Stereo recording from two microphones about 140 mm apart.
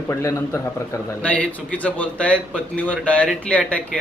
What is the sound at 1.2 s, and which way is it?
A man's voice, 10° left (ahead or behind).